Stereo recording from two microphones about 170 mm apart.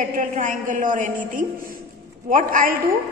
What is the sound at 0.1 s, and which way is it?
A woman's voice, 50° right (ahead or behind).